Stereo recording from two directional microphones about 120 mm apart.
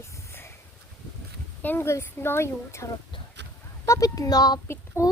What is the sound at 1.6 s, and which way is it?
A child's voice, 20° left (ahead or behind).